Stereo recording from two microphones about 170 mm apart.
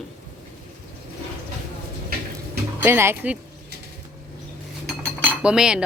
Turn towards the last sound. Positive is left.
turn(degrees=-5)  # may be behind; listen again after turning